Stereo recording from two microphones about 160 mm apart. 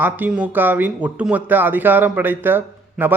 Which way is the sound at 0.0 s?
10° right (ahead or behind).